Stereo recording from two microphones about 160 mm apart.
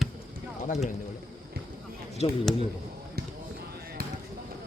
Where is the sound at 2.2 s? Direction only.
40° left (ahead or behind).